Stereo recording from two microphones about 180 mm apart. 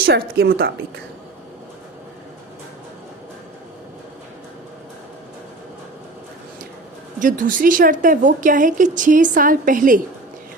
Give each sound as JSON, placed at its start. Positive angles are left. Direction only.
{"t": 0.0, "sound": "a woman's voice", "side_deg": -60}
{"t": 7.2, "sound": "speech", "side_deg": -45}